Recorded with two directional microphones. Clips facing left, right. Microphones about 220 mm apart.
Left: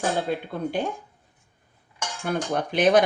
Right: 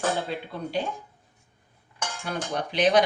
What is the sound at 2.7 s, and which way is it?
Speech, 50° left (ahead or behind).